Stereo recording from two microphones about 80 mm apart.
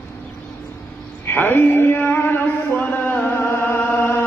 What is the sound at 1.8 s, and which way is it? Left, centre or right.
Music, left.